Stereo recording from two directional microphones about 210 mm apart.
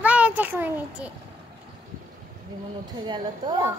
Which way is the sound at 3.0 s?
20° right (ahead or behind).